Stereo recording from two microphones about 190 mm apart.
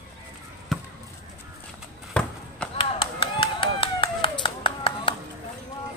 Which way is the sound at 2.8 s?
25° left (ahead or behind).